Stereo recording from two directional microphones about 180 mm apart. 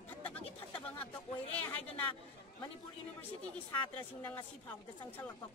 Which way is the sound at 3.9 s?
10° left (ahead or behind).